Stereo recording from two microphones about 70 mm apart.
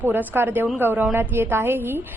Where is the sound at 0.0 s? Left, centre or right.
Right.